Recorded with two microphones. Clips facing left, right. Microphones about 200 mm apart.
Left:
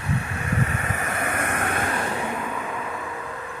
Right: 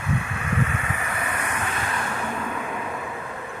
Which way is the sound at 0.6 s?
40° left (ahead or behind).